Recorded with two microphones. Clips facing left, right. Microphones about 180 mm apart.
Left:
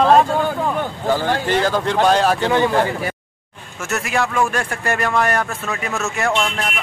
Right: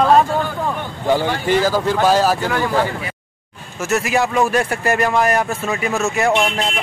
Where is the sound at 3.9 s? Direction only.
Centre (ahead or behind).